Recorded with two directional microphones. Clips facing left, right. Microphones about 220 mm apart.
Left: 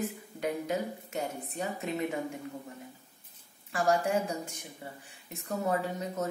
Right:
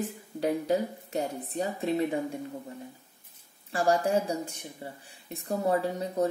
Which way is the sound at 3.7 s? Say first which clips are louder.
Right 3 dB; 35° right (ahead or behind).